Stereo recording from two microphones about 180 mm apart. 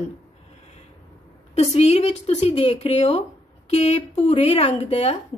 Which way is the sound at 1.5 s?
35° left (ahead or behind).